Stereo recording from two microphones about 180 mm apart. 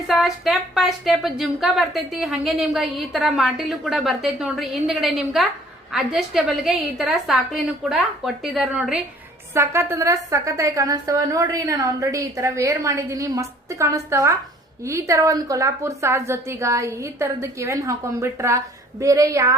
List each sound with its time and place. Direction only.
0.1 s a woman's voice: centre (ahead or behind)
9.6 s a woman's voice: 15° right (ahead or behind)